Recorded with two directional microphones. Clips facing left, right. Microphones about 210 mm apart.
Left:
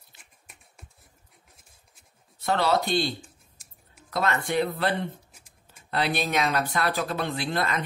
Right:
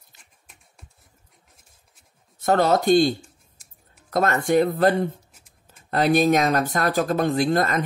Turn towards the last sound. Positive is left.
turn(degrees=-45)  # may be behind; listen again after turning